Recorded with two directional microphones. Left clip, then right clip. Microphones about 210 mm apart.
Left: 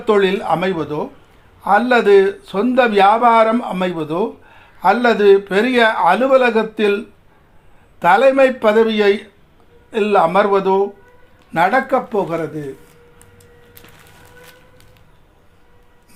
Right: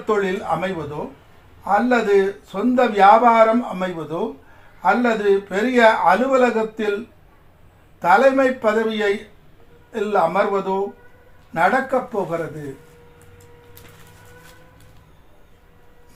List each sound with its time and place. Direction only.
0.0 s a man's voice: 45° left (ahead or behind)
7.9 s a man's voice: 45° left (ahead or behind)